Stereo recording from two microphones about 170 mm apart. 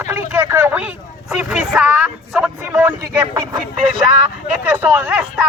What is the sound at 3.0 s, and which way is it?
Speech, 20° right (ahead or behind).